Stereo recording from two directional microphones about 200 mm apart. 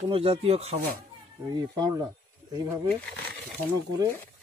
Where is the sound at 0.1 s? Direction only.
30° right (ahead or behind).